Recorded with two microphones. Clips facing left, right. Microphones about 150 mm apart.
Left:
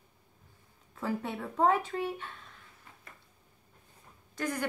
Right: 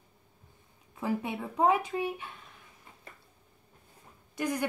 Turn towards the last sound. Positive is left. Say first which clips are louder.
# right 2 dB
turn(degrees=-15)  # may be behind; listen again after turning